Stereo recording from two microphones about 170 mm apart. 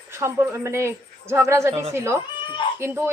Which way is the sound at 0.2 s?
15° right (ahead or behind).